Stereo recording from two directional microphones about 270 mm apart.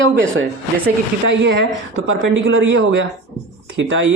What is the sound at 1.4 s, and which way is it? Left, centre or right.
Speech, right.